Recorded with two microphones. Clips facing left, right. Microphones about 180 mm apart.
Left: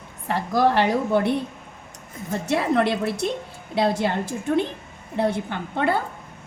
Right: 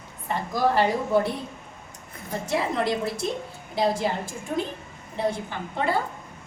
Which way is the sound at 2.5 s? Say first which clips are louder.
Left 4 dB; 65° left (ahead or behind).